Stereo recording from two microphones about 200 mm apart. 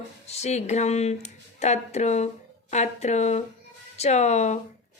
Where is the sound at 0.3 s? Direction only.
35° left (ahead or behind).